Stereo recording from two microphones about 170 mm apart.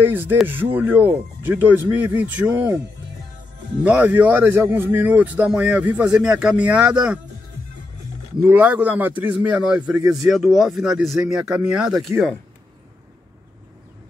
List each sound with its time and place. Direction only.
0.0 s a man's voice: 10° right (ahead or behind)
3.8 s a man's voice: 10° right (ahead or behind)
8.5 s a man's voice: 10° right (ahead or behind)
12.1 s a man's voice: 15° right (ahead or behind)